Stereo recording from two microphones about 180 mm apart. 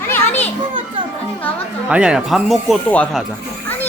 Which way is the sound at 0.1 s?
10° left (ahead or behind).